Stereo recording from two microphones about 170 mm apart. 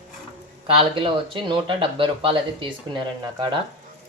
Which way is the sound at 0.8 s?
30° right (ahead or behind).